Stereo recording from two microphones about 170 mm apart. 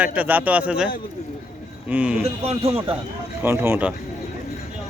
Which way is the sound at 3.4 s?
15° right (ahead or behind).